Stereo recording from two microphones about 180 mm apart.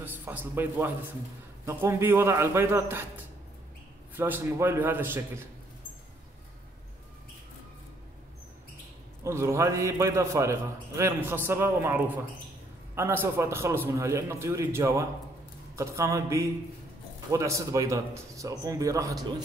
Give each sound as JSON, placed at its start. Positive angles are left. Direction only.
{"t": 0.0, "sound": "a man's voice", "side_deg": -10}
{"t": 4.1, "sound": "a man's voice", "side_deg": -10}
{"t": 9.2, "sound": "a man's voice", "side_deg": -15}